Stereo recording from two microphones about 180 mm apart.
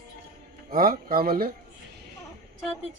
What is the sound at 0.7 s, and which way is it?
Speech, 55° right (ahead or behind).